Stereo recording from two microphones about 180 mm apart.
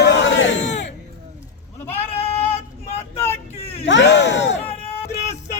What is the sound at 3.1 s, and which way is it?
Vehicle, 15° left (ahead or behind).